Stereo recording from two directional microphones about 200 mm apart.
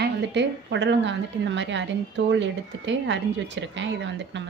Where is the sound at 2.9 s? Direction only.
65° right (ahead or behind).